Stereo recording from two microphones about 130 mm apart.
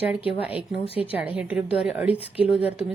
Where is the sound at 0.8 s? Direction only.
50° left (ahead or behind).